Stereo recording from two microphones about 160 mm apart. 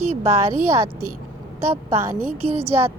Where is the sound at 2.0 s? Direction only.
15° right (ahead or behind).